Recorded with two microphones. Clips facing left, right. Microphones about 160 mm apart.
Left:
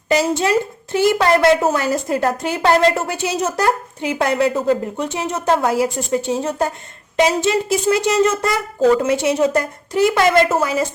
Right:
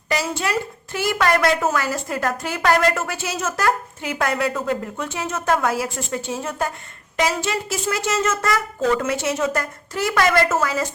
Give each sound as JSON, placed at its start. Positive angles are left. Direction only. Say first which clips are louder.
{"t": 0.1, "sound": "a woman's voice", "louder": "left 7 dB", "side_deg": 20}
{"t": 4.9, "sound": "a woman's voice", "louder": "left 4 dB", "side_deg": 20}
{"t": 8.4, "sound": "a woman's voice", "louder": "left 5 dB", "side_deg": 30}
{"t": 9.1, "sound": "speech", "louder": "left 6 dB", "side_deg": 15}
{"t": 9.4, "sound": "speech", "louder": "left 6 dB", "side_deg": 30}
{"t": 9.9, "sound": "a woman's voice", "louder": "left 5 dB", "side_deg": 20}